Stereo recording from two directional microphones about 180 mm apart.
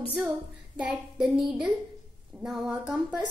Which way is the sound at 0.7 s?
5° right (ahead or behind).